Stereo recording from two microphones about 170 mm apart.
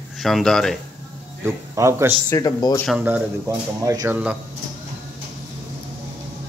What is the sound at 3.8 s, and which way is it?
Speech, 15° right (ahead or behind).